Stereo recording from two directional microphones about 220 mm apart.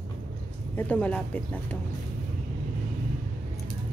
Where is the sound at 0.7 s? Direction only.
5° left (ahead or behind).